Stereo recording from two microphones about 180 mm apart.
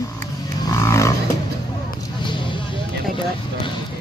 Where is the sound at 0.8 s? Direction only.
15° left (ahead or behind).